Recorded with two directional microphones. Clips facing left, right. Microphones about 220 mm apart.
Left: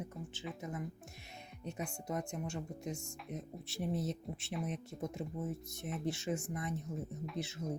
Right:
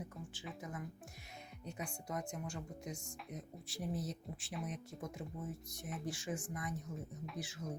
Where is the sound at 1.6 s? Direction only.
25° left (ahead or behind).